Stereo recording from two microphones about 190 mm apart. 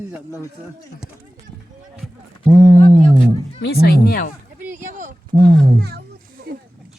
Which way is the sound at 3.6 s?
55° left (ahead or behind).